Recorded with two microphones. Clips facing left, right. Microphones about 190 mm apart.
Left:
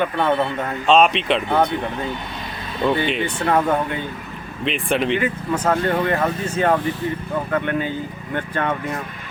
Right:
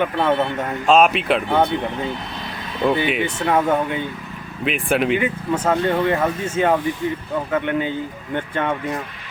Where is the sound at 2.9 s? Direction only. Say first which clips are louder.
Right 1 dB; 5° right (ahead or behind).